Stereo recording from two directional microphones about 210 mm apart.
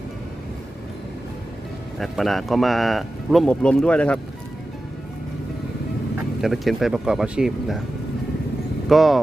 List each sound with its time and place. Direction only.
2.0 s speech: centre (ahead or behind)
6.4 s speech: centre (ahead or behind)
8.9 s speech: centre (ahead or behind)